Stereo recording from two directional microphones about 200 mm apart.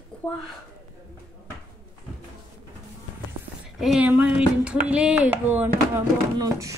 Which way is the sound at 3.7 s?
Centre (ahead or behind).